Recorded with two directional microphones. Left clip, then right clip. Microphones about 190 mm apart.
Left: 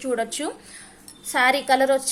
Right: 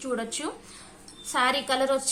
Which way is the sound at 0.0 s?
30° left (ahead or behind).